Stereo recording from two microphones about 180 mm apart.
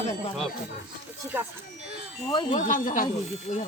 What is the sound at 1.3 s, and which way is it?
Speech, 10° right (ahead or behind).